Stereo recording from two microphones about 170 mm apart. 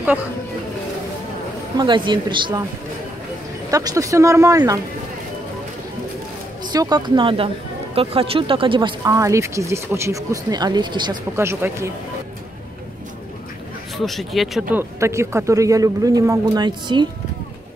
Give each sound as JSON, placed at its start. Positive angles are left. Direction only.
{"t": 1.8, "sound": "speech", "side_deg": -30}
{"t": 3.7, "sound": "speech", "side_deg": -20}
{"t": 6.6, "sound": "speech", "side_deg": -25}
{"t": 11.3, "sound": "speech", "side_deg": -15}
{"t": 13.9, "sound": "speech", "side_deg": 0}
{"t": 14.8, "sound": "speech", "side_deg": -15}